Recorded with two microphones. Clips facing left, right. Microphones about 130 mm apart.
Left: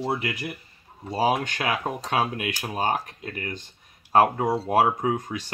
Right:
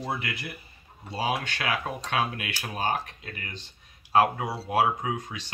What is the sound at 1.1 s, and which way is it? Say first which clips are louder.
Speech: left 6 dB; 40° left (ahead or behind).